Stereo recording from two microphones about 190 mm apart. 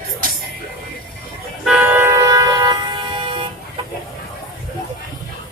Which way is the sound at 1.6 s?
10° right (ahead or behind).